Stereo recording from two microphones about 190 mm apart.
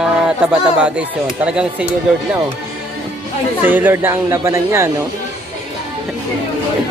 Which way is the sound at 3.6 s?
10° right (ahead or behind).